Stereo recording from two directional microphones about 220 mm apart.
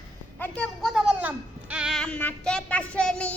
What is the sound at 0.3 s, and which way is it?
Speech, 5° left (ahead or behind).